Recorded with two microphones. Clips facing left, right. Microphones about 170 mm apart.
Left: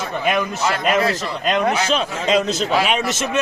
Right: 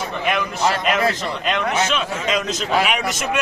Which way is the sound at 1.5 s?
35° left (ahead or behind).